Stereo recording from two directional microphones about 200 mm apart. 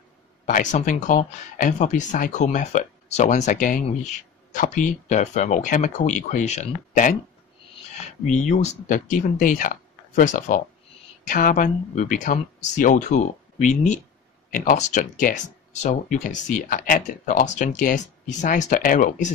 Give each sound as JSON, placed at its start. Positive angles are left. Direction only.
{"t": 0.5, "sound": "speech", "side_deg": 40}
{"t": 8.3, "sound": "speech", "side_deg": 35}